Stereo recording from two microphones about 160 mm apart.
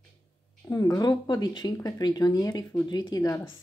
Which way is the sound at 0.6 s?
20° left (ahead or behind).